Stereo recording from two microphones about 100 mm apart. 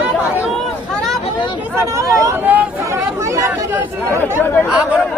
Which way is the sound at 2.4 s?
15° right (ahead or behind).